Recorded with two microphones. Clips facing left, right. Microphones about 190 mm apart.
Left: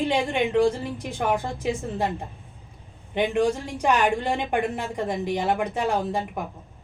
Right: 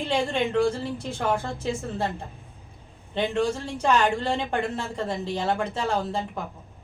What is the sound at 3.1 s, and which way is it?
Speech, 15° left (ahead or behind).